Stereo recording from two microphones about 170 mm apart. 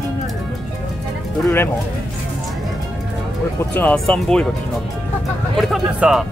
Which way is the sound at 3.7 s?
10° left (ahead or behind).